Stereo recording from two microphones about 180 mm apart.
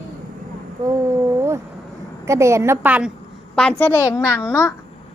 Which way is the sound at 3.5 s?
10° left (ahead or behind).